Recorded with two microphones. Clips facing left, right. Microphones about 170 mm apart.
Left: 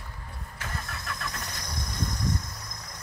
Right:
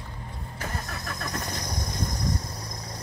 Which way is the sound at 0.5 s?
40° right (ahead or behind).